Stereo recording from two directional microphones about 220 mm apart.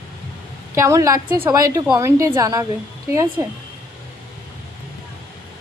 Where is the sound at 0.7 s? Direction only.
15° right (ahead or behind).